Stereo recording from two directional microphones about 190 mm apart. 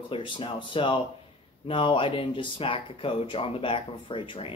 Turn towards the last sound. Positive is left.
turn(degrees=30)  # may be behind; listen again after turning